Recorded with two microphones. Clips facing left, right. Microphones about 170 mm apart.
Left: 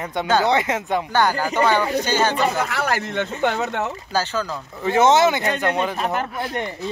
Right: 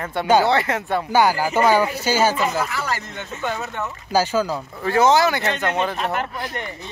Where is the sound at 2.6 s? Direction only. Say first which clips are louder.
Left 2 dB; 65° left (ahead or behind).